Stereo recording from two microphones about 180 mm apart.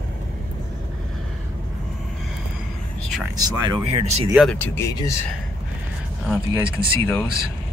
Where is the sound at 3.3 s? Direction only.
20° right (ahead or behind).